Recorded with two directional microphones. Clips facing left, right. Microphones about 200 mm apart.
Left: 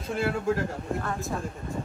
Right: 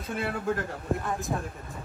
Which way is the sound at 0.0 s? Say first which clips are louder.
Left 3 dB; centre (ahead or behind).